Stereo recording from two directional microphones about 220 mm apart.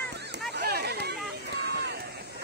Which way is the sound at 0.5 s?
45° right (ahead or behind).